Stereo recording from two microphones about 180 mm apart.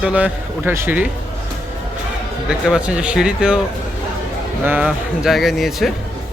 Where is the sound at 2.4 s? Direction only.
5° right (ahead or behind).